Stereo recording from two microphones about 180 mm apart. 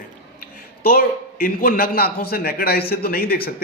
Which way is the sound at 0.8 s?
55° left (ahead or behind).